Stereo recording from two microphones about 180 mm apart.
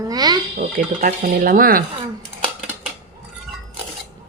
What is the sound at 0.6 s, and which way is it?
Speech, 50° right (ahead or behind).